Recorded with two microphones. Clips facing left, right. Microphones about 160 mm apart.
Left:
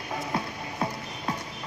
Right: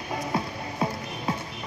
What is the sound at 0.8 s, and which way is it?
Music, 5° right (ahead or behind).